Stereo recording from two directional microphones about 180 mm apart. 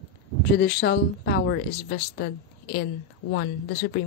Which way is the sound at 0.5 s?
65° left (ahead or behind).